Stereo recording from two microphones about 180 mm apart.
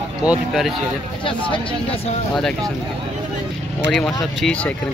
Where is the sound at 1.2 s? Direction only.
30° left (ahead or behind).